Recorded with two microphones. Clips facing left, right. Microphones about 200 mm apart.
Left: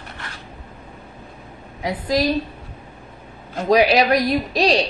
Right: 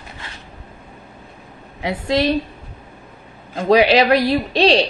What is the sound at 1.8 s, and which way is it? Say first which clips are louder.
Speech: right 2 dB; 25° right (ahead or behind).